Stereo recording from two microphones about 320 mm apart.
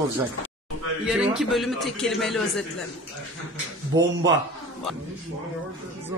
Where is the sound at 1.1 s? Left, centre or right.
Centre.